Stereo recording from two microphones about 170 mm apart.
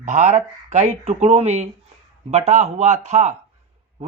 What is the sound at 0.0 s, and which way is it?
Speech, 45° right (ahead or behind).